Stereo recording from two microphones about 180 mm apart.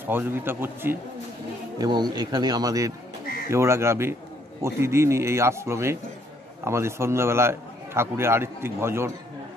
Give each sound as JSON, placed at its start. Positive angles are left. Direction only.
{"t": 0.0, "sound": "a man's voice", "side_deg": -10}
{"t": 1.8, "sound": "a man's voice", "side_deg": -25}